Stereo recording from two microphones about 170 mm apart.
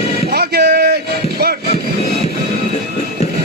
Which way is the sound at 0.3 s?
70° right (ahead or behind).